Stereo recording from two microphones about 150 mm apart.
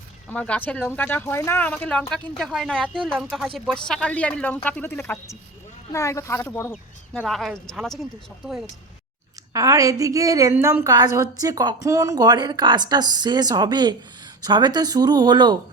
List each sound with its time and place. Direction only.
0.3 s speech: 10° left (ahead or behind)
9.5 s a woman's voice: 25° right (ahead or behind)